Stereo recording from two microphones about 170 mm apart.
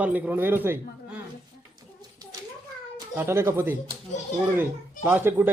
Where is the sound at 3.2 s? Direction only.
15° right (ahead or behind).